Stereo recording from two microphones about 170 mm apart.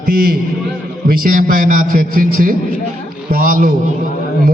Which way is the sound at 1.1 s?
55° right (ahead or behind).